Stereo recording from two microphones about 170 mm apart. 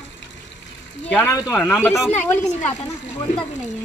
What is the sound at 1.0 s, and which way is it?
Speech, 10° left (ahead or behind).